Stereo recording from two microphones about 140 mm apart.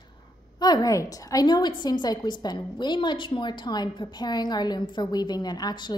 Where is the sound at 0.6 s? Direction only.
30° left (ahead or behind).